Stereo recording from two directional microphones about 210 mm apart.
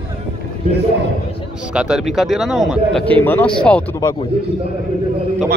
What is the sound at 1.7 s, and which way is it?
Speech, 5° right (ahead or behind).